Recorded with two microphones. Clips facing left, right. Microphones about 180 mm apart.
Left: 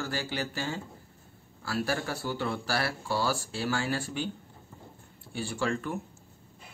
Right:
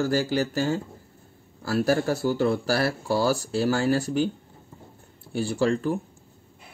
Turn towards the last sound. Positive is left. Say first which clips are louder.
# right 8 dB
turn(degrees=-35)  # may be behind; listen again after turning